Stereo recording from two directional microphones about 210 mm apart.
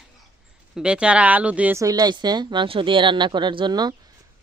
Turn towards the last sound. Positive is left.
turn(degrees=-20)  # may be behind; listen again after turning